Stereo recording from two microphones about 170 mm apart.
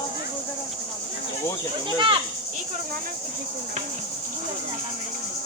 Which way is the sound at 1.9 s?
30° right (ahead or behind).